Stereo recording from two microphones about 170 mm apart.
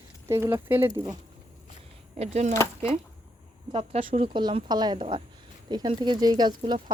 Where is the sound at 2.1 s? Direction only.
40° right (ahead or behind).